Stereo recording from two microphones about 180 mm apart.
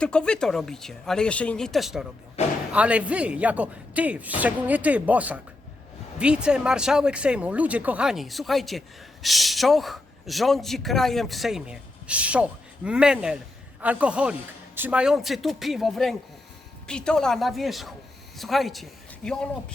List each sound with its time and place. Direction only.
0.0 s speech: 5° left (ahead or behind)
2.4 s speech: 35° left (ahead or behind)
2.7 s speech: 5° right (ahead or behind)